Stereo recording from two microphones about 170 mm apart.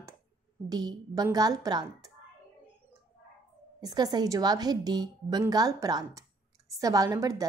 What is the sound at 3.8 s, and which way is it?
A woman's voice, 25° right (ahead or behind).